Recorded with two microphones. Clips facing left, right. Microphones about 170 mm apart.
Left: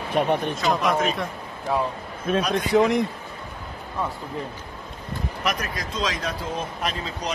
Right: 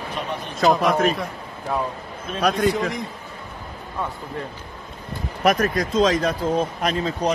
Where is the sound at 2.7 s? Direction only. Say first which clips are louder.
Left 6 dB; 65° left (ahead or behind).